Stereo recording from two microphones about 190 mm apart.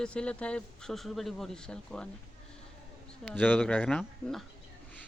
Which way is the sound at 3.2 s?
10° left (ahead or behind).